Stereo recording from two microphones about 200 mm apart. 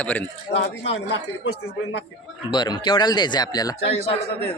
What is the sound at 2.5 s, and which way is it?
Speech, 20° left (ahead or behind).